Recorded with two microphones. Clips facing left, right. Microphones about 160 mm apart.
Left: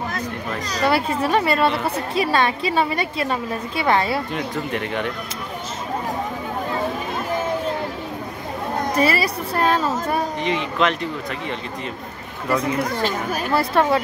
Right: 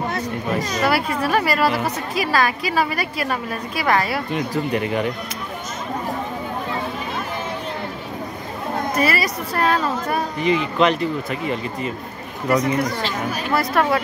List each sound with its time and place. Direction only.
0.9 s a woman's voice: 25° left (ahead or behind)
4.3 s speech: centre (ahead or behind)
8.9 s a woman's voice: 30° left (ahead or behind)
9.6 s speech: centre (ahead or behind)
12.8 s speech: 50° left (ahead or behind)
13.5 s a woman's voice: 30° left (ahead or behind)